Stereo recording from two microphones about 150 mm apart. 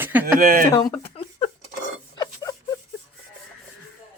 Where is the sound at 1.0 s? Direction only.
40° left (ahead or behind).